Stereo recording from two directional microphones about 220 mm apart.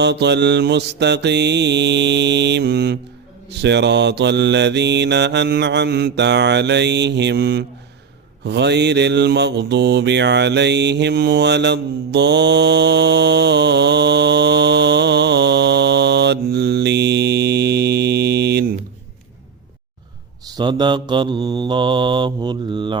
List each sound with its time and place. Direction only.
0.0 s mantra: 50° right (ahead or behind)
20.5 s mantra: 20° right (ahead or behind)